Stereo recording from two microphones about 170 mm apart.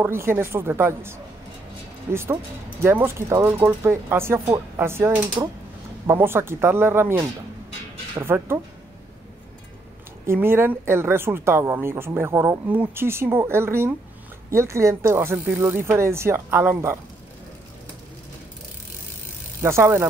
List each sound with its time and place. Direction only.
0.0 s speech: 15° right (ahead or behind)
2.8 s speech: 15° right (ahead or behind)
10.2 s speech: 15° right (ahead or behind)
19.6 s speech: 15° right (ahead or behind)